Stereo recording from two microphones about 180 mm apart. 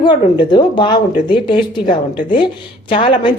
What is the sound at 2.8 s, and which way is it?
Speech, 30° left (ahead or behind).